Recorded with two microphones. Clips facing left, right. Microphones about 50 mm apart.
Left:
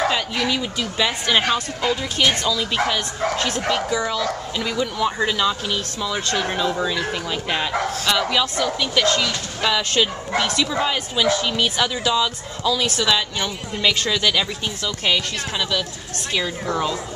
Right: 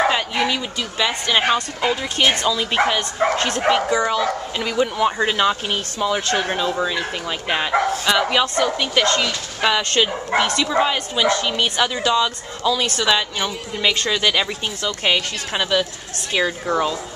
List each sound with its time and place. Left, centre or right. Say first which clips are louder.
0.0 s bow-wow: right 2 dB; right
0.7 s speech: even; centre
1.4 s speech: right 2 dB; centre
6.4 s speech: right 1 dB; centre
16.6 s speech: right 3 dB; centre